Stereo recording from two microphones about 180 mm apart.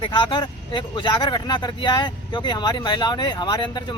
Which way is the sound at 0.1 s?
25° left (ahead or behind).